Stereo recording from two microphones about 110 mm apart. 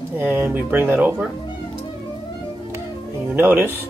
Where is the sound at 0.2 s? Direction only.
20° right (ahead or behind).